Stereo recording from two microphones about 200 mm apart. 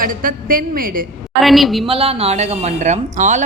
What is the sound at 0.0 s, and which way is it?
A woman's voice, 45° right (ahead or behind).